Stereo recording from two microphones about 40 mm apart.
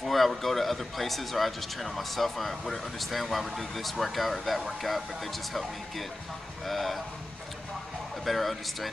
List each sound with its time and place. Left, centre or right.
0.0 s speech: centre
8.3 s speech: centre